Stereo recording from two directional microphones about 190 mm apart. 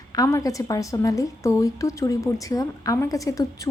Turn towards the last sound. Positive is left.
turn(degrees=15)  # may be behind; listen again after turning